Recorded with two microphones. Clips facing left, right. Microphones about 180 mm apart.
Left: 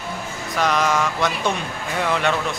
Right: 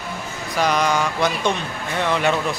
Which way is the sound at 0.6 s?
Centre (ahead or behind).